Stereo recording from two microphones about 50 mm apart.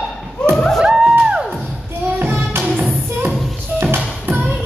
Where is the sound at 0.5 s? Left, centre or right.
Centre.